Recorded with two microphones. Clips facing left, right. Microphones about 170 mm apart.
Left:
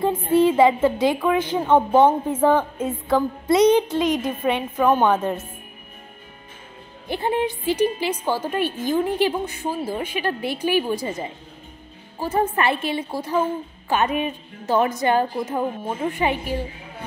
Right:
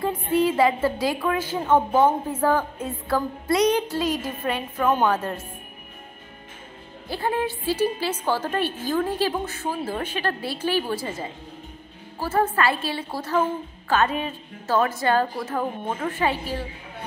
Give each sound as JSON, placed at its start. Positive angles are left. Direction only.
{"t": 0.0, "sound": "a woman's voice", "side_deg": 25}
{"t": 7.1, "sound": "a woman's voice", "side_deg": 20}